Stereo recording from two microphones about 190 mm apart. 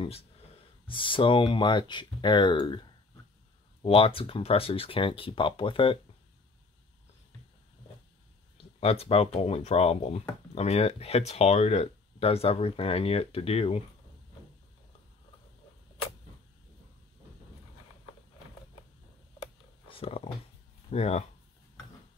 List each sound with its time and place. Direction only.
0.8 s speech: 25° left (ahead or behind)
8.5 s speech: 30° left (ahead or behind)
19.4 s a sound: 30° left (ahead or behind)
20.9 s speech: 35° left (ahead or behind)